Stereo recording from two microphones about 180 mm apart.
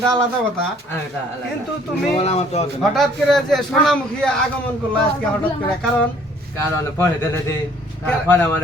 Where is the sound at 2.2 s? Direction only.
35° left (ahead or behind).